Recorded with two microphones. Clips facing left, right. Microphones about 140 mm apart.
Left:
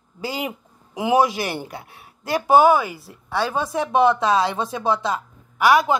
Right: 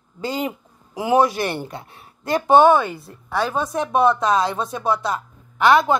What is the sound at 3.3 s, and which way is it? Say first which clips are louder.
Speech: right 1 dB; 25° left (ahead or behind).